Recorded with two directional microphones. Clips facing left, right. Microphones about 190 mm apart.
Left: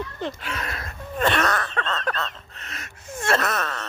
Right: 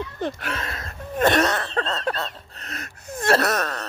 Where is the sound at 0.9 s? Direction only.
40° right (ahead or behind).